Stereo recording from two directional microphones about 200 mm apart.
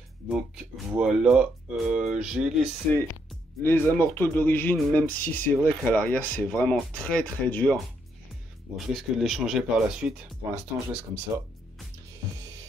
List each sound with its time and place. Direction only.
0.3 s speech: centre (ahead or behind)
3.6 s speech: 10° left (ahead or behind); by 11.0 s 5° right (ahead or behind)